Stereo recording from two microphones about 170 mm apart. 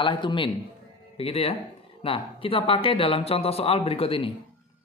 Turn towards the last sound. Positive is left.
turn(degrees=35)  # may be behind; listen again after turning